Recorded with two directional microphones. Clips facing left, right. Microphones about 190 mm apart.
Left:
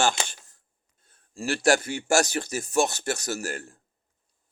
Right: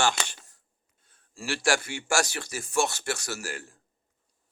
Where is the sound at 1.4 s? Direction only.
40° left (ahead or behind).